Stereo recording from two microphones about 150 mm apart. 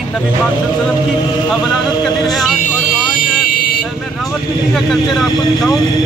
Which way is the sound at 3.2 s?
85° left.